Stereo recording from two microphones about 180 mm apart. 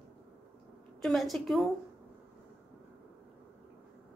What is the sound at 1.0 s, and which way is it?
Speech, centre (ahead or behind).